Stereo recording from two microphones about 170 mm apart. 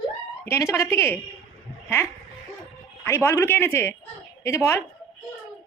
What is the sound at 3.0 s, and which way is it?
A woman's voice, 15° left (ahead or behind).